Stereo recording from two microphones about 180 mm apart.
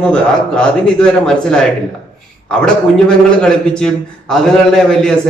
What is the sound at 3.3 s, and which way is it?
A man's voice, 5° left (ahead or behind).